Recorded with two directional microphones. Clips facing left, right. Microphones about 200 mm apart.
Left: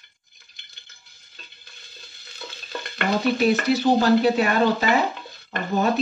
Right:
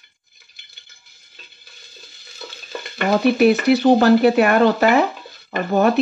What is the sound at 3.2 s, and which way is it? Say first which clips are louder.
Speech: right 6 dB; 65° right (ahead or behind).